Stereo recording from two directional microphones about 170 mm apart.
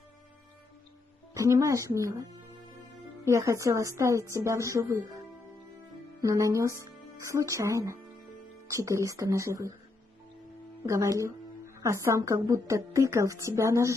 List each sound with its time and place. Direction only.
1.3 s speech: 20° right (ahead or behind)
3.3 s a woman's voice: 20° right (ahead or behind)
6.2 s a woman's voice: 20° right (ahead or behind)
10.9 s a woman's voice: 20° right (ahead or behind)